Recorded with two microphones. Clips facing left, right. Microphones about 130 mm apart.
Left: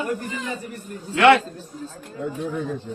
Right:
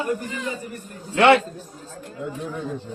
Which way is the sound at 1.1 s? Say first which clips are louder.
Even; 30° right (ahead or behind).